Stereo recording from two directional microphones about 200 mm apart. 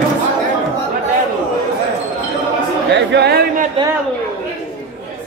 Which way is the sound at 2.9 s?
60° right (ahead or behind).